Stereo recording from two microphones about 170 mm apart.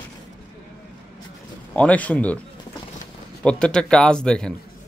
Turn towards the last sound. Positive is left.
turn(degrees=5)  # may be behind; listen again after turning